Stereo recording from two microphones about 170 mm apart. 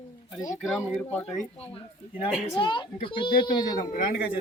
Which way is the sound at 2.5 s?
30° left (ahead or behind).